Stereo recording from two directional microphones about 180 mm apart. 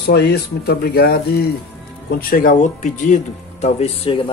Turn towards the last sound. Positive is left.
turn(degrees=30)  # may be behind; listen again after turning